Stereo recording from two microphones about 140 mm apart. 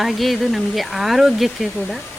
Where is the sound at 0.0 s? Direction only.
Centre (ahead or behind).